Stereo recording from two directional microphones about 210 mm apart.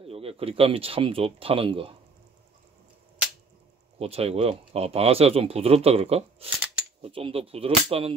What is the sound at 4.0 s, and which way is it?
Speech, 30° right (ahead or behind).